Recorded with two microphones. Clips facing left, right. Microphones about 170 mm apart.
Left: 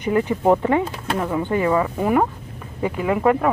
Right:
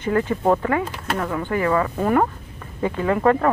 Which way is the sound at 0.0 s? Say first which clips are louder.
Left 1 dB; 15° left (ahead or behind).